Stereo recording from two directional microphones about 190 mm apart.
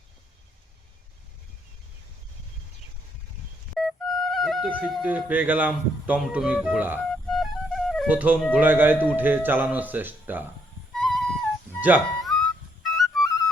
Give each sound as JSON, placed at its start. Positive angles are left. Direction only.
{"t": 3.8, "sound": "speech", "side_deg": 0}
{"t": 7.3, "sound": "music", "side_deg": 0}
{"t": 8.5, "sound": "speech", "side_deg": -10}
{"t": 10.9, "sound": "music", "side_deg": 0}
{"t": 11.8, "sound": "speech", "side_deg": -10}
{"t": 12.8, "sound": "music", "side_deg": 0}